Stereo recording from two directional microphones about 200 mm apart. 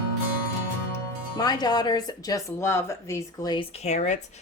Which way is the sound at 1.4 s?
20° left (ahead or behind).